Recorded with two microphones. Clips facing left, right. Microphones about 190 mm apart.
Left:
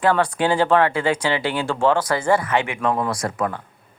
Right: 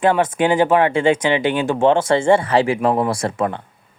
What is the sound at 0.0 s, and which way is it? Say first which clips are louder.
Speech: right 3 dB; 20° right (ahead or behind).